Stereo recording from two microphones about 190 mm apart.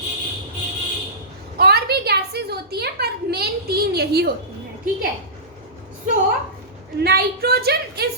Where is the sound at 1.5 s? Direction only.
55° right (ahead or behind).